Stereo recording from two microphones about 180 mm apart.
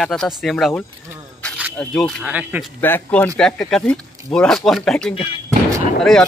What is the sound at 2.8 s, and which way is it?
Speech, 10° left (ahead or behind).